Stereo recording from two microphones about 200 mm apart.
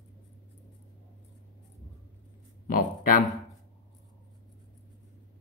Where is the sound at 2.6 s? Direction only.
45° left (ahead or behind).